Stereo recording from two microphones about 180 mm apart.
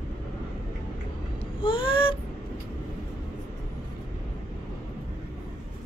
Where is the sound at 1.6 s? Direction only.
30° left (ahead or behind).